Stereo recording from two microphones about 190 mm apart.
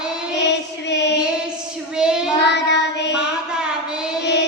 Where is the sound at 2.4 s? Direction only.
65° left (ahead or behind).